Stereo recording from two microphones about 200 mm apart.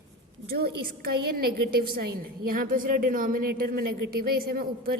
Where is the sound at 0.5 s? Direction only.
50° right (ahead or behind).